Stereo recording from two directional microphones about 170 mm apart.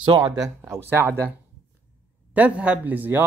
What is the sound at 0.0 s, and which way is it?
Speech, 25° right (ahead or behind).